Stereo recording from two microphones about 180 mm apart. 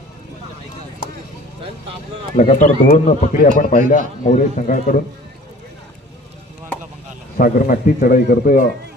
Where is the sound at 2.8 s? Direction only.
55° left (ahead or behind).